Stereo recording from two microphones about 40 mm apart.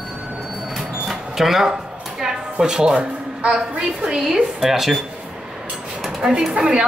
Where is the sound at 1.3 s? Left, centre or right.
Centre; by 3.5 s right.